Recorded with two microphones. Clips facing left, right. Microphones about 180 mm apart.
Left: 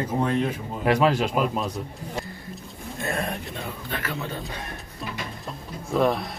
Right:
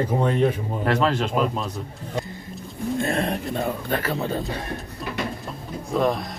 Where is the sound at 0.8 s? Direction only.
10° left (ahead or behind).